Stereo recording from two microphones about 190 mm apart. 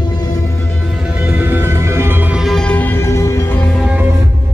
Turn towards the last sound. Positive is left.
turn(degrees=15)  # may be behind; listen again after turning